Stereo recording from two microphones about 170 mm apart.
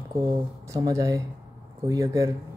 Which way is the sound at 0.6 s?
20° right (ahead or behind).